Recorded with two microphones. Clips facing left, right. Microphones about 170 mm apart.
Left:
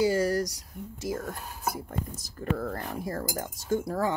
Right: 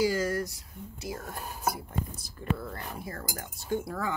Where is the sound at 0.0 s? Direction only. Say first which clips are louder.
Left 3 dB; 30° left (ahead or behind).